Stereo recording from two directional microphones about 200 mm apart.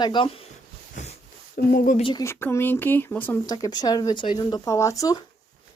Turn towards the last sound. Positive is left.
turn(degrees=15)  # may be behind; listen again after turning